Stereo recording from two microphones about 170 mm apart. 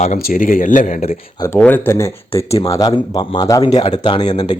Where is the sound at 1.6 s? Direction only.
10° left (ahead or behind).